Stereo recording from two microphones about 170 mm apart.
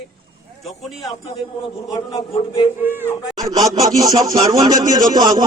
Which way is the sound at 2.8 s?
10° right (ahead or behind).